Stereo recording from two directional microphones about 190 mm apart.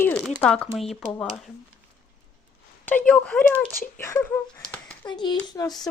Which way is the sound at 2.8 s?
10° left (ahead or behind).